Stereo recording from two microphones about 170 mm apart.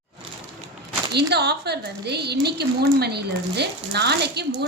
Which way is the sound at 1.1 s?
75° right (ahead or behind).